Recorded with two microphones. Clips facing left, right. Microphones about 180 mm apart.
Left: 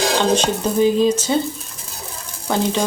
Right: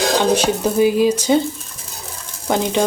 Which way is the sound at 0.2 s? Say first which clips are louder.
Right 1 dB; 10° right (ahead or behind).